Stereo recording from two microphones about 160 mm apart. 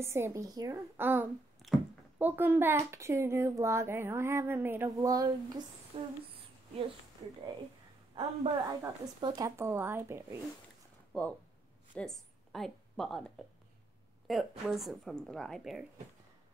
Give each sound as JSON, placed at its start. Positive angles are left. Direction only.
{"t": 0.0, "sound": "a child's voice", "side_deg": -15}
{"t": 5.9, "sound": "speech", "side_deg": -35}
{"t": 7.2, "sound": "speech", "side_deg": -25}
{"t": 11.9, "sound": "a woman's voice", "side_deg": 5}